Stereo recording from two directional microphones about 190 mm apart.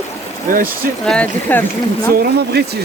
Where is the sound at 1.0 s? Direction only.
5° left (ahead or behind).